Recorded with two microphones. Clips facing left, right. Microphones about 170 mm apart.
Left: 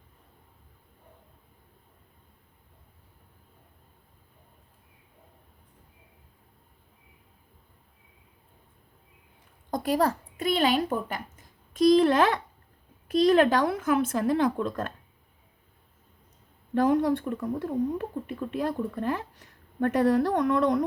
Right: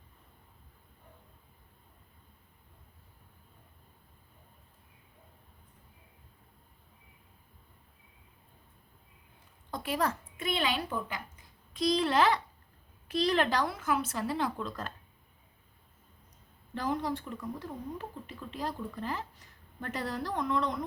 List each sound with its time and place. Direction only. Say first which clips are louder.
9.6 s speech: left 7 dB; 40° left (ahead or behind)
16.7 s speech: left 10 dB; 60° left (ahead or behind)